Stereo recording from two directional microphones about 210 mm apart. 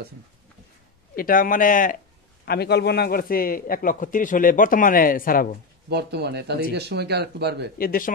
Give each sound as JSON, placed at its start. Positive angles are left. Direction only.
{"t": 1.1, "sound": "a man's voice", "side_deg": 40}
{"t": 5.9, "sound": "speech", "side_deg": -50}
{"t": 7.7, "sound": "a man's voice", "side_deg": 45}